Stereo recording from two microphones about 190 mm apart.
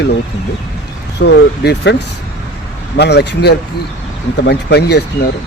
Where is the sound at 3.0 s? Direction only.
60° left (ahead or behind).